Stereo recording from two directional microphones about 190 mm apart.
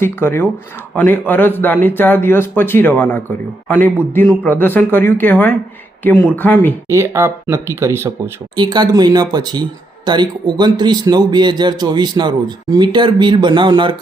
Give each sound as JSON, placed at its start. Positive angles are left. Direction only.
{"t": 0.0, "sound": "speech", "side_deg": 10}
{"t": 6.8, "sound": "speech", "side_deg": -15}